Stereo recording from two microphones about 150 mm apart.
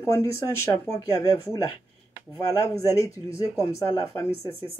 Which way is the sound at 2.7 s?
20° left (ahead or behind).